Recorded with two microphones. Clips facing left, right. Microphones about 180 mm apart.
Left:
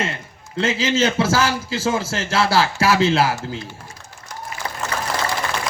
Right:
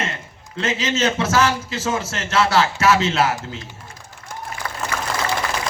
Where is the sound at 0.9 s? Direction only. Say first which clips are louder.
Even; 30° left (ahead or behind).